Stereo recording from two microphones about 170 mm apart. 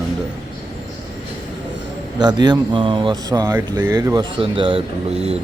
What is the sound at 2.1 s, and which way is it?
Speech, 25° right (ahead or behind).